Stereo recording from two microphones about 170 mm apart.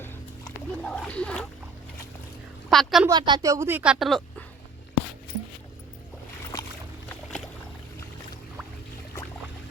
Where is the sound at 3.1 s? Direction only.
25° right (ahead or behind).